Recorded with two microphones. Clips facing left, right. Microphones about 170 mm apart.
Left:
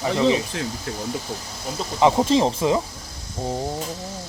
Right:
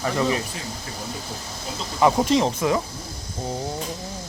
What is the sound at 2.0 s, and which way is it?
Speech, 15° left (ahead or behind).